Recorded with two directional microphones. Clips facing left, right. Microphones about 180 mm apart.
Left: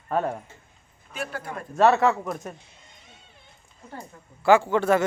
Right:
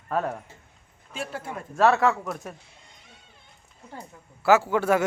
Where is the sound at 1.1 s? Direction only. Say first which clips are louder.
Left 1 dB; 25° right (ahead or behind).